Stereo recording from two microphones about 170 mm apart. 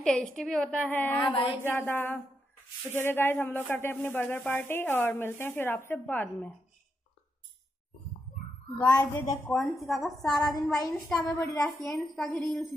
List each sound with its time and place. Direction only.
0.0 s speech: 5° left (ahead or behind)
1.3 s speech: 30° left (ahead or behind)
1.6 s speech: 10° left (ahead or behind)
8.7 s a woman's voice: 10° left (ahead or behind)
10.3 s a woman's voice: 20° left (ahead or behind)
11.9 s a woman's voice: centre (ahead or behind)